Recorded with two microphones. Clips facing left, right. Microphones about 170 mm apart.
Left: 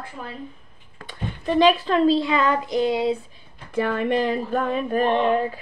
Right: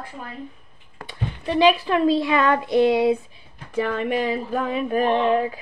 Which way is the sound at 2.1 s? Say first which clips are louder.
Even; 25° left (ahead or behind).